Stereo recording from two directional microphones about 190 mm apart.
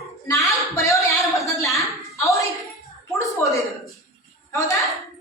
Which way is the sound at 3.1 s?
15° left (ahead or behind).